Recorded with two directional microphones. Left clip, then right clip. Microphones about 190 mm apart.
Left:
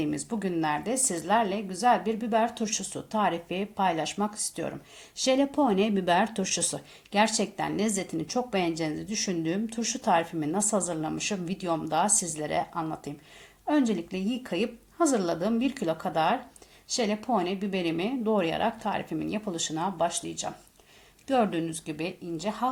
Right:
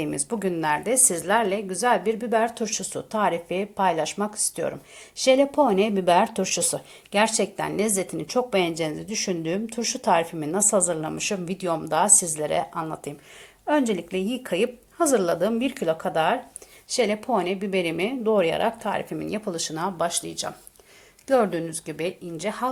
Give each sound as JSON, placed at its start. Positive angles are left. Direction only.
{"t": 0.0, "sound": "speech", "side_deg": -20}